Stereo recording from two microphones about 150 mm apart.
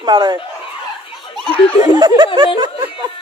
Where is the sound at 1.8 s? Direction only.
30° right (ahead or behind).